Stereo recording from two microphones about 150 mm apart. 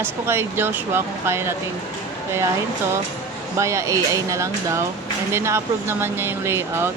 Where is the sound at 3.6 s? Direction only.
20° right (ahead or behind).